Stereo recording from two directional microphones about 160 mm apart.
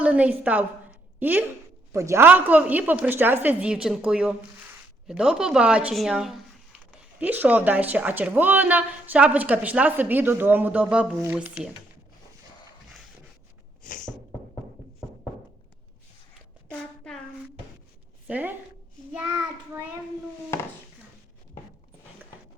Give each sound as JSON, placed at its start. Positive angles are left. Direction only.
{"t": 0.0, "sound": "a woman's voice", "side_deg": -10}
{"t": 13.8, "sound": "a sound", "side_deg": 55}
{"t": 18.3, "sound": "a woman's voice", "side_deg": -10}
{"t": 20.5, "sound": "speech", "side_deg": 15}